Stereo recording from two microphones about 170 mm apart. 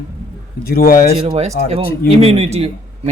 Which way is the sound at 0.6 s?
60° left (ahead or behind).